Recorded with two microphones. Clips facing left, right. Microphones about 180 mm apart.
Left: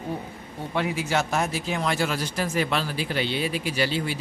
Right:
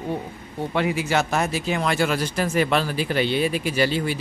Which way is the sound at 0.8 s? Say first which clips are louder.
Right 3 dB; 70° right (ahead or behind).